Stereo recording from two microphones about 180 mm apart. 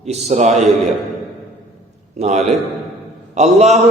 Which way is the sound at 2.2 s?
40° right (ahead or behind).